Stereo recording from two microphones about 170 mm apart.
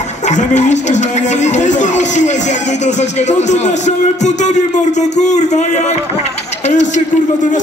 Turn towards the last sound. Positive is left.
turn(degrees=45)  # may be behind; listen again after turning